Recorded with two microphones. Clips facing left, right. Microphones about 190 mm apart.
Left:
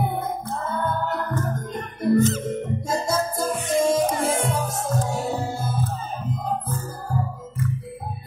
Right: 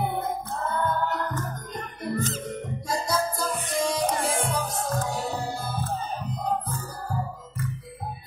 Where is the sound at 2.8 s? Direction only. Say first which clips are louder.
Left 1 dB; 50° left (ahead or behind).